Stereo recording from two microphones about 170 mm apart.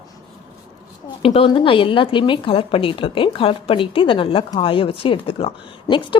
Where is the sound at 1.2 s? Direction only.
35° left (ahead or behind).